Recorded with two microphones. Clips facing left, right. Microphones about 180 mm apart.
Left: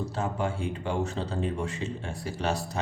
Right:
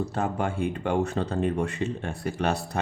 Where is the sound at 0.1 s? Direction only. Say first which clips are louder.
Right 2 dB; 55° right (ahead or behind).